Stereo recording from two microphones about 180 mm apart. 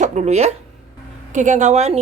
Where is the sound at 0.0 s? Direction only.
40° right (ahead or behind).